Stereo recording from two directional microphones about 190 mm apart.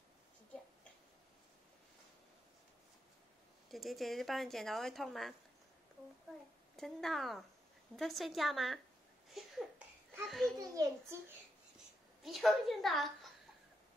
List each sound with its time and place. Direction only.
3.7 s speech: centre (ahead or behind)
6.8 s speech: centre (ahead or behind)
9.3 s a sound: centre (ahead or behind)
10.2 s speech: centre (ahead or behind)
10.6 s a child's voice: 20° right (ahead or behind)
12.2 s speech: centre (ahead or behind)